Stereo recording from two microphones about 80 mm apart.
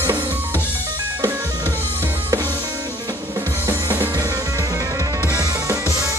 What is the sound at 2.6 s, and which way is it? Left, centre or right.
Music, right.